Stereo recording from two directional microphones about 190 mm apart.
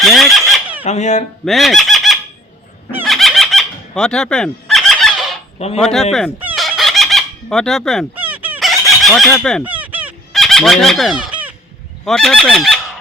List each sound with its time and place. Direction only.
0.0 s fowl: centre (ahead or behind)
0.9 s speech: 35° left (ahead or behind)
1.5 s speech: centre (ahead or behind)
3.0 s fowl: centre (ahead or behind)
5.5 s speech: 35° left (ahead or behind)
5.8 s goose: centre (ahead or behind)
6.4 s chicken: 5° right (ahead or behind)
8.1 s fowl: 10° right (ahead or behind)
9.3 s goose: 5° left (ahead or behind)
9.6 s fowl: 10° right (ahead or behind)
10.3 s fowl: centre (ahead or behind)
12.0 s goose: centre (ahead or behind)